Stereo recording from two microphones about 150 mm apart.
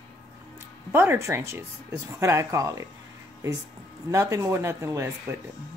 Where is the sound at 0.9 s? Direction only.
15° right (ahead or behind).